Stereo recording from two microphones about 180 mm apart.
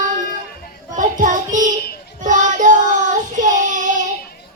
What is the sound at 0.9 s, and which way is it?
Child singing, 45° right (ahead or behind).